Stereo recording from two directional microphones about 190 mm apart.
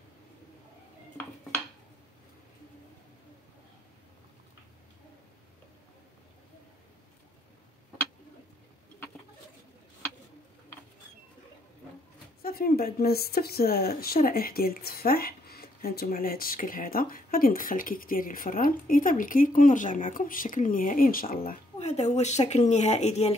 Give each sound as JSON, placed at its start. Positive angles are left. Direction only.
{"t": 12.4, "sound": "speech", "side_deg": 50}
{"t": 21.7, "sound": "speech", "side_deg": 35}